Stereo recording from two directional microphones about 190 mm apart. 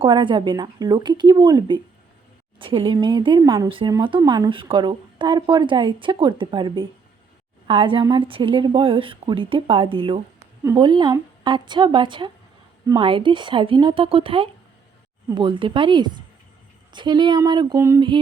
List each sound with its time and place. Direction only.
0.0 s speech: 25° right (ahead or behind)